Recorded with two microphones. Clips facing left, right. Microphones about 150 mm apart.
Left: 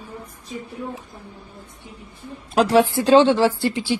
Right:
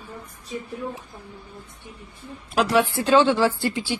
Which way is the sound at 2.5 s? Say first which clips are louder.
Left 4 dB; 35° left (ahead or behind).